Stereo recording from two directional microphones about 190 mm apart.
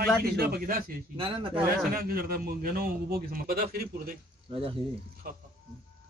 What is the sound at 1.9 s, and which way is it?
A man's voice, 50° right (ahead or behind).